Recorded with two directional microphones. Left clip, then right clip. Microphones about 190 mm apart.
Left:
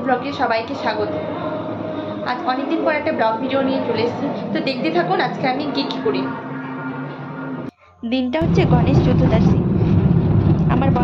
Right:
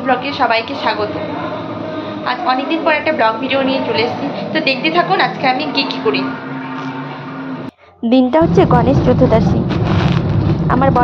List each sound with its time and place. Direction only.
0.0 s a woman's voice: centre (ahead or behind)
2.2 s a woman's voice: 5° left (ahead or behind)
8.1 s a woman's voice: 25° right (ahead or behind)
10.7 s speech: 10° right (ahead or behind)